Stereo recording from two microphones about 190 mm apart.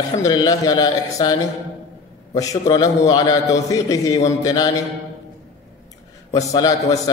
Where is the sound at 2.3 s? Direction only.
20° left (ahead or behind).